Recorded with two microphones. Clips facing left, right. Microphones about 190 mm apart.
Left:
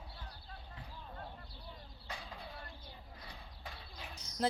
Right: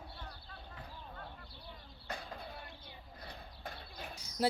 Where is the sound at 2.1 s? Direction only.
45° right (ahead or behind).